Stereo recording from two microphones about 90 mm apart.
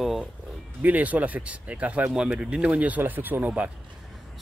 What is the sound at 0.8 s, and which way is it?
Speech, 20° right (ahead or behind).